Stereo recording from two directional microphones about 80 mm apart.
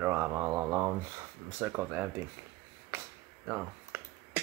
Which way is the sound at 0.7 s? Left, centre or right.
Right.